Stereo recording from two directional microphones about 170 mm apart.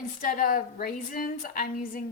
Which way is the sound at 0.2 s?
55° left (ahead or behind).